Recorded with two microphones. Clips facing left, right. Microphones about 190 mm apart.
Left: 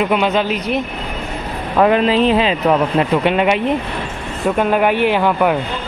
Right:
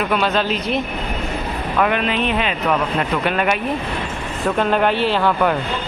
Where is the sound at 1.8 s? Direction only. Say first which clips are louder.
Left 7 dB; 30° left (ahead or behind).